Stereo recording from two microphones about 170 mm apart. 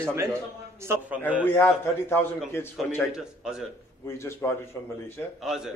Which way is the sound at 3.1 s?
5° right (ahead or behind).